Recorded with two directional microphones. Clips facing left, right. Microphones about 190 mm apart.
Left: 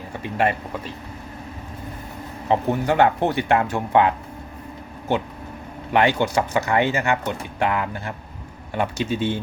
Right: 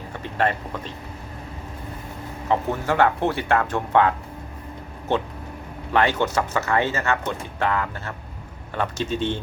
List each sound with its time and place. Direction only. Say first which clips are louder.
0.2 s speech: left 2 dB; 10° left (ahead or behind)
2.5 s speech: left 3 dB; 20° left (ahead or behind)
5.9 s speech: left 2 dB; 15° left (ahead or behind)